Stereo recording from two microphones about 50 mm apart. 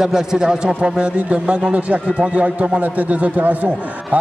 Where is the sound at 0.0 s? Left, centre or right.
Centre.